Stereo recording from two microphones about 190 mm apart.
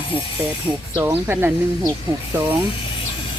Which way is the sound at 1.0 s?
15° right (ahead or behind).